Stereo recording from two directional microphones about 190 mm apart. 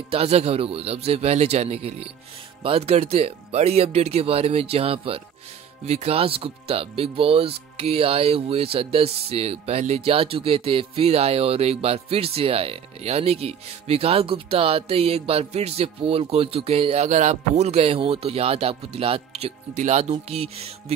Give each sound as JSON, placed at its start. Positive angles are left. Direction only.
{"t": 0.1, "sound": "speech", "side_deg": -30}